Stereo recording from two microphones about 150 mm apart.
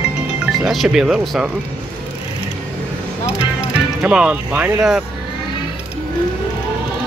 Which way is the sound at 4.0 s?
5° right (ahead or behind).